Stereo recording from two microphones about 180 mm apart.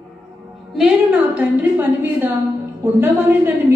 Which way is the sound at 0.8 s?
5° right (ahead or behind).